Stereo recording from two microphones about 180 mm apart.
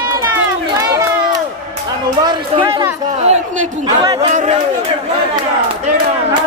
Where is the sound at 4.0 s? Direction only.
25° right (ahead or behind).